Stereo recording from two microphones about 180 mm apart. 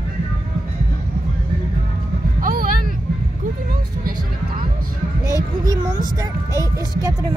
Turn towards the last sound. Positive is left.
turn(degrees=-20)  # may be behind; listen again after turning